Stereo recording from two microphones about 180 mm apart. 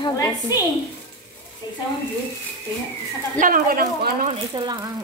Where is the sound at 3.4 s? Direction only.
50° right (ahead or behind).